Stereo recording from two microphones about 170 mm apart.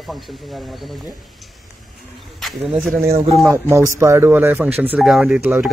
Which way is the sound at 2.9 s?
60° right (ahead or behind).